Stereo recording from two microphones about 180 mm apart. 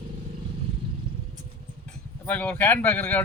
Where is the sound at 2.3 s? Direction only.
10° left (ahead or behind).